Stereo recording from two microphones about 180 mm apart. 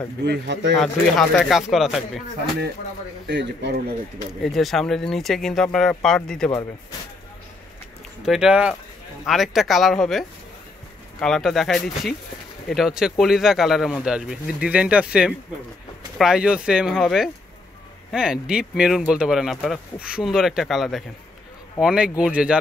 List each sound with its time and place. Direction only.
0.2 s speech: 70° right (ahead or behind)
0.7 s speech: 5° left (ahead or behind)
3.3 s speech: 70° right (ahead or behind)
4.4 s speech: centre (ahead or behind)
8.2 s speech: 5° right (ahead or behind)